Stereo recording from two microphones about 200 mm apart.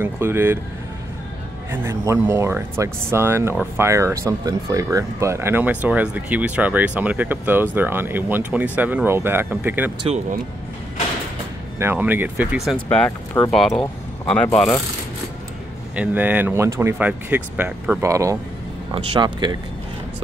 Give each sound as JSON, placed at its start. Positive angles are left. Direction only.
{"t": 0.0, "sound": "speech", "side_deg": -10}
{"t": 1.7, "sound": "speech", "side_deg": -15}
{"t": 10.0, "sound": "speech", "side_deg": -35}
{"t": 11.8, "sound": "speech", "side_deg": -10}
{"t": 15.9, "sound": "speech", "side_deg": -5}